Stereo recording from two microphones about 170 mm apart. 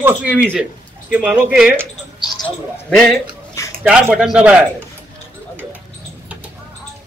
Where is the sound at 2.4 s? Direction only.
5° left (ahead or behind).